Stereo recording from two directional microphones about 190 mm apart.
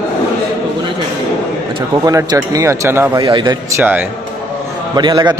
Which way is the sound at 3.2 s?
20° right (ahead or behind).